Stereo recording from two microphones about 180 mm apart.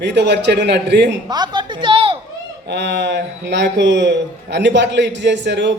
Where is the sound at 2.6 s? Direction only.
75° right (ahead or behind).